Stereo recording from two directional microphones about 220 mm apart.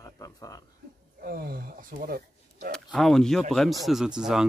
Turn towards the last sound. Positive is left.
turn(degrees=-5)  # may be behind; listen again after turning